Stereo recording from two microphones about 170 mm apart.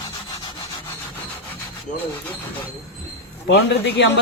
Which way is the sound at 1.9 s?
45° left (ahead or behind).